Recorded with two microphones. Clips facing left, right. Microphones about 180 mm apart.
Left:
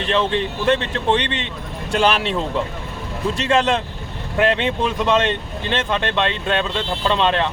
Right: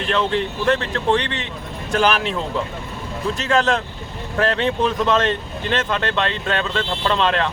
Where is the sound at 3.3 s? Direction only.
25° left (ahead or behind).